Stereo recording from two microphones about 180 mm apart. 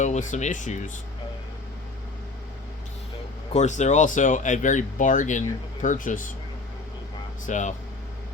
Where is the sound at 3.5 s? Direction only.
40° left (ahead or behind).